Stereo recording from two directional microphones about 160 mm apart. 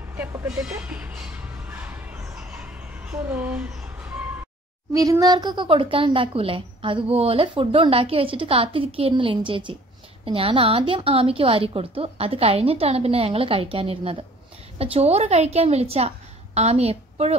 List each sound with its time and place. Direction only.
0.1 s music: 15° right (ahead or behind)
0.6 s speech: 10° right (ahead or behind)
1.7 s a sound: 10° right (ahead or behind)
4.9 s a woman's voice: 20° right (ahead or behind); by 17.4 s 40° right (ahead or behind)